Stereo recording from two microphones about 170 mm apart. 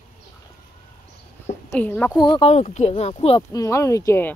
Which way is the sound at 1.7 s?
10° left (ahead or behind).